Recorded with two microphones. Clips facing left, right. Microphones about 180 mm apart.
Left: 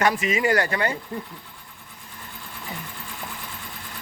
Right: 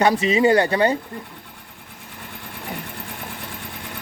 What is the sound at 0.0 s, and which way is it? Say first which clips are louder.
Speech: right 5 dB; 30° right (ahead or behind).